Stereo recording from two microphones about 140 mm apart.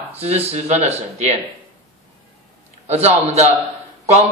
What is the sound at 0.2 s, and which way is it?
A man's voice, 50° right (ahead or behind).